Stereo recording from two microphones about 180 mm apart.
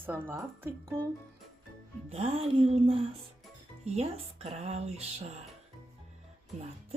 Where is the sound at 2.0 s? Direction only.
35° right (ahead or behind).